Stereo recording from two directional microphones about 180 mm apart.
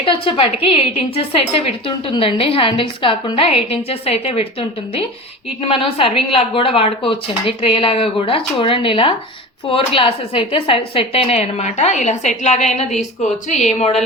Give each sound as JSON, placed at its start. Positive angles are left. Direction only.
{"t": 0.0, "sound": "a woman's voice", "side_deg": 30}
{"t": 5.6, "sound": "a woman's voice", "side_deg": 30}